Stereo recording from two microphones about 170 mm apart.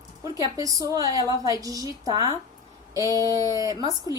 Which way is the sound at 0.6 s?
20° right (ahead or behind).